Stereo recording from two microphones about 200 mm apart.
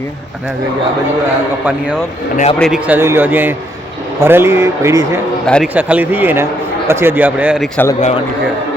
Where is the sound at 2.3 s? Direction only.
35° left (ahead or behind).